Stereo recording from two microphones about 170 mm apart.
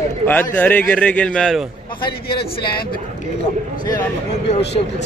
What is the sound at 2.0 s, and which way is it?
Speech, 65° left (ahead or behind).